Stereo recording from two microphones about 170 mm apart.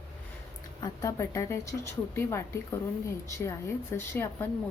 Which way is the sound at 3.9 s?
15° left (ahead or behind).